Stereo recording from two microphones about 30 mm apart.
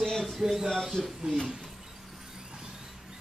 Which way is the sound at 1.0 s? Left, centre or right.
Centre.